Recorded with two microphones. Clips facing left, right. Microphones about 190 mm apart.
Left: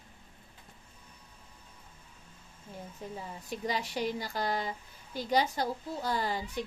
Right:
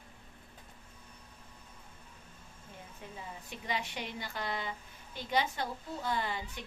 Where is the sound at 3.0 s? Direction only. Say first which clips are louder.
Left 4 dB; 35° left (ahead or behind).